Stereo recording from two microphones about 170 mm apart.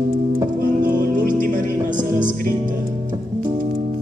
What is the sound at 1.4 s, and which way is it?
Music, 50° right (ahead or behind).